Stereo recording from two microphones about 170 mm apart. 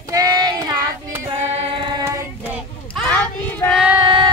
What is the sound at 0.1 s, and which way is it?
Child singing, 20° right (ahead or behind).